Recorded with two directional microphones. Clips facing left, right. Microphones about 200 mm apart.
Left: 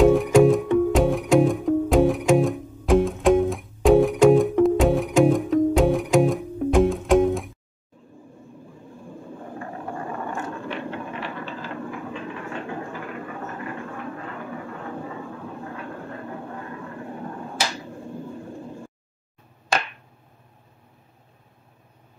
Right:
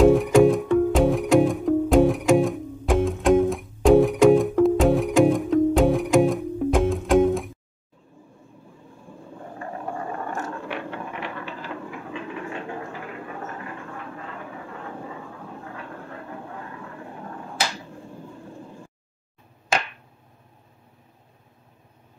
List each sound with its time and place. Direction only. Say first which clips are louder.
0.0 s music: even; centre (ahead or behind)